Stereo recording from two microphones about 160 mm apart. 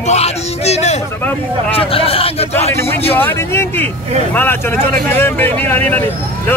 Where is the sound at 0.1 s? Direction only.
40° left (ahead or behind).